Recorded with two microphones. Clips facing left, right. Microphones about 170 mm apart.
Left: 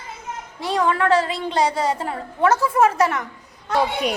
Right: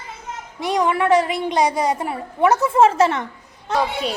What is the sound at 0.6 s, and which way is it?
A woman's voice, 15° right (ahead or behind).